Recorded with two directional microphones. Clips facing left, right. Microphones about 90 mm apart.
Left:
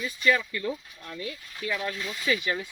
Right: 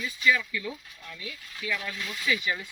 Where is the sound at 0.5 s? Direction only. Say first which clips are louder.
Left 4 dB; 45° left (ahead or behind).